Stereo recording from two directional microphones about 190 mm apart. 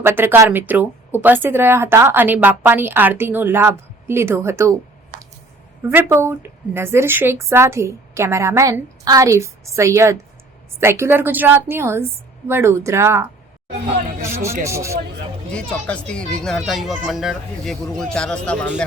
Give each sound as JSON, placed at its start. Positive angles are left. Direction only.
{"t": 0.0, "sound": "speech", "side_deg": -10}
{"t": 5.9, "sound": "speech", "side_deg": -10}
{"t": 14.3, "sound": "speech", "side_deg": -15}
{"t": 15.5, "sound": "speech", "side_deg": 5}